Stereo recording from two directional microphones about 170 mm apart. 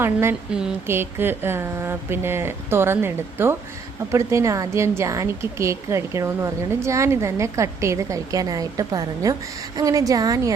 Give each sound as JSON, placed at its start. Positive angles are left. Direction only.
{"t": 0.0, "sound": "a woman's voice", "side_deg": -15}